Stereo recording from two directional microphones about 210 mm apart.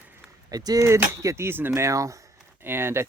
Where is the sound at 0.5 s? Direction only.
15° right (ahead or behind).